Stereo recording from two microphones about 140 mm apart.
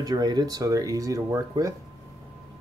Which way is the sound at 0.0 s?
30° right (ahead or behind).